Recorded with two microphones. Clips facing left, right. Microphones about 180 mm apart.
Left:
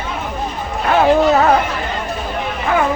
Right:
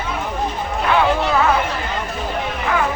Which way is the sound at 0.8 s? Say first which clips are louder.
Left 6 dB; 45° left (ahead or behind).